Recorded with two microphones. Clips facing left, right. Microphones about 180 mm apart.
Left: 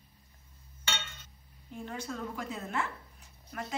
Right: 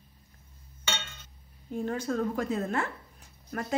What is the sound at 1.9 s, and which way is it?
A woman's voice, 45° right (ahead or behind).